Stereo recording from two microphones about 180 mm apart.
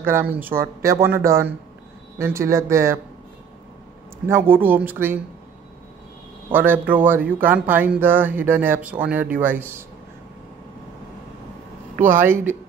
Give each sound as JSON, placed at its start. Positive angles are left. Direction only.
{"t": 0.0, "sound": "speech", "side_deg": -10}
{"t": 4.3, "sound": "speech", "side_deg": -10}
{"t": 6.5, "sound": "speech", "side_deg": -10}
{"t": 12.2, "sound": "speech", "side_deg": -10}